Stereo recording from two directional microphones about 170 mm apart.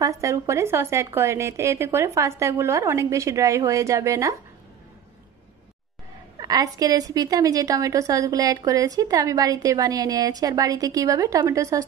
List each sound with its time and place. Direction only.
0.0 s speech: 20° right (ahead or behind)
6.3 s a woman's voice: 20° right (ahead or behind)